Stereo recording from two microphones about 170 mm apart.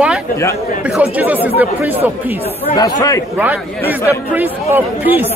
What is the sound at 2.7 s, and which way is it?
Speech, 25° left (ahead or behind).